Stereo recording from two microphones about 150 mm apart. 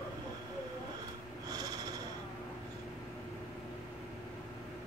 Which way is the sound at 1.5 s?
25° right (ahead or behind).